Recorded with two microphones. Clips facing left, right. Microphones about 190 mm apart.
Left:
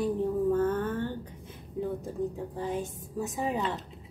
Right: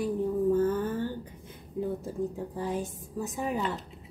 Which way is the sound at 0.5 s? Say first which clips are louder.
Right 1 dB; 65° left (ahead or behind).